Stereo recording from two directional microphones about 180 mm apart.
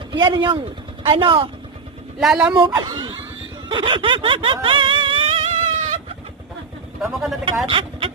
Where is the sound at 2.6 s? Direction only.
25° right (ahead or behind).